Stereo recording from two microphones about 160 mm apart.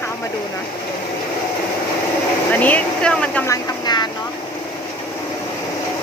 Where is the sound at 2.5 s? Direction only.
10° left (ahead or behind).